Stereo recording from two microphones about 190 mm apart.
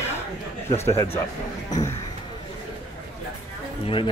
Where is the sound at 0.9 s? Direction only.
30° left (ahead or behind).